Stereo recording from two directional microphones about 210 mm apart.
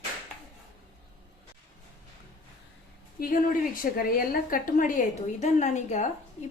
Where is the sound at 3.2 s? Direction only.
45° left (ahead or behind).